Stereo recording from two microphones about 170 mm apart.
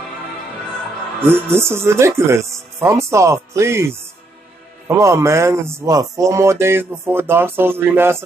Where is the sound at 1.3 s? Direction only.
15° right (ahead or behind).